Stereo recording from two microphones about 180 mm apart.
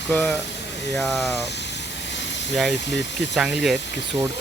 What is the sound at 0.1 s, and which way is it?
Speech, 5° left (ahead or behind).